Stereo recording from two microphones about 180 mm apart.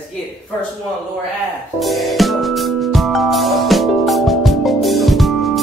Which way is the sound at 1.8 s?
Centre (ahead or behind).